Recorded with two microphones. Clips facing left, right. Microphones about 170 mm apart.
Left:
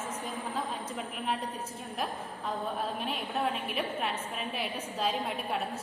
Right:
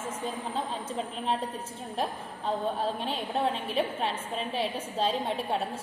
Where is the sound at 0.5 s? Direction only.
30° right (ahead or behind).